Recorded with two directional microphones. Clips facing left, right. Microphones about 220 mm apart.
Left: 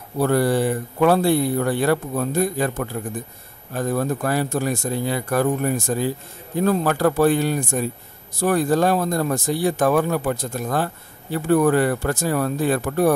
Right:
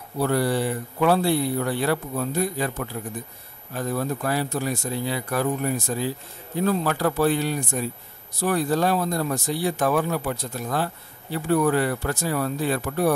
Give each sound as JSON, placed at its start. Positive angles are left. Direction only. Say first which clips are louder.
{"t": 0.2, "sound": "speech", "louder": "left 4 dB", "side_deg": 50}